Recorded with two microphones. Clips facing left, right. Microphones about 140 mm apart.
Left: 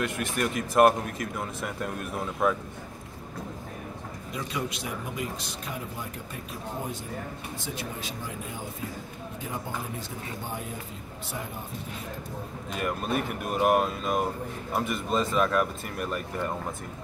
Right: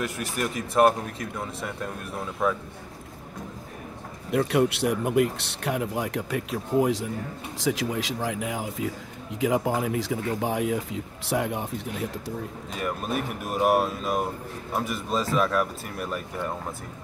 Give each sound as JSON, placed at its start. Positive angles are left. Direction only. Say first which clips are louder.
{"t": 0.4, "sound": "speech", "louder": "even", "side_deg": 0}
{"t": 4.3, "sound": "speech", "louder": "right 11 dB", "side_deg": -65}
{"t": 12.7, "sound": "speech", "louder": "even", "side_deg": 0}